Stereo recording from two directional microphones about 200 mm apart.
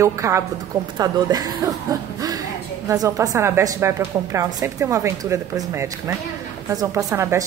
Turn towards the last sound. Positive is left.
turn(degrees=-15)  # may be behind; listen again after turning